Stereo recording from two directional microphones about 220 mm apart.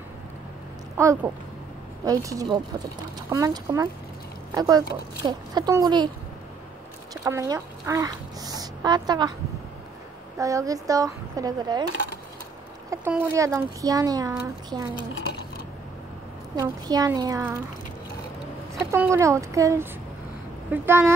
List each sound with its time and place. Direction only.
0.9 s speech: 15° right (ahead or behind)
7.2 s speech: 15° right (ahead or behind)
10.3 s speech: 15° right (ahead or behind)
12.9 s speech: 10° right (ahead or behind)
16.5 s speech: 15° right (ahead or behind)
18.9 s speech: 15° right (ahead or behind)